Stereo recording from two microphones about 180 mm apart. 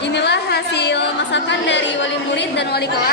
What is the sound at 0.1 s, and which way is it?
Chatter, 70° left (ahead or behind).